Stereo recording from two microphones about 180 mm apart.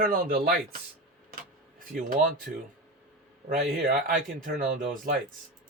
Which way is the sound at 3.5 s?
50° right (ahead or behind).